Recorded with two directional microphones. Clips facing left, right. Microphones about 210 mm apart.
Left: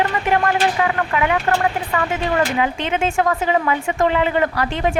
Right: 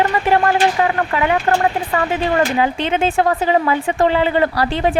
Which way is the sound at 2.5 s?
35° right (ahead or behind).